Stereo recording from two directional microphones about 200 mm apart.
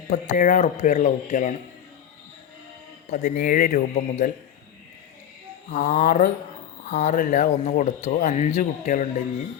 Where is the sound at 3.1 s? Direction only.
40° left (ahead or behind).